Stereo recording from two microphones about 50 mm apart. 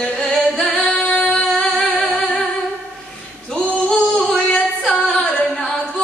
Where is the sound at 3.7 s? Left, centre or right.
Centre.